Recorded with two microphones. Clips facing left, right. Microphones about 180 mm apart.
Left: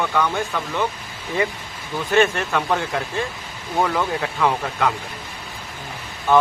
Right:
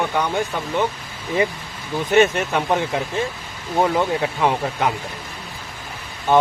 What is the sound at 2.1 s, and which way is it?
Speech, 20° right (ahead or behind).